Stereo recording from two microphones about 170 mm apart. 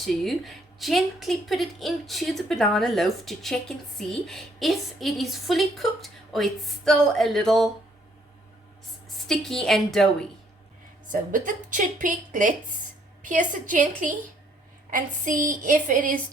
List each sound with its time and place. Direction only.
0.0 s a woman's voice: centre (ahead or behind)
9.1 s a woman's voice: centre (ahead or behind)
11.1 s a woman's voice: 50° right (ahead or behind)